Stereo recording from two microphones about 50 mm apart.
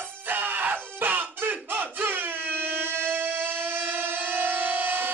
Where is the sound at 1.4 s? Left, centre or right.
Right.